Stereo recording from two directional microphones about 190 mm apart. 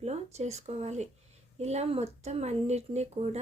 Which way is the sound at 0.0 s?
35° right (ahead or behind).